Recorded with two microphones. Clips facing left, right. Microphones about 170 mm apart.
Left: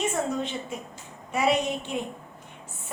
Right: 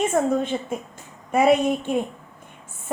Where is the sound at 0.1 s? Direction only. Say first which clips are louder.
Right 7 dB; 50° right (ahead or behind).